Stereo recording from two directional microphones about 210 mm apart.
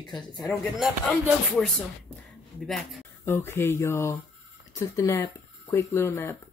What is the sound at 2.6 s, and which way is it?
Speech, centre (ahead or behind).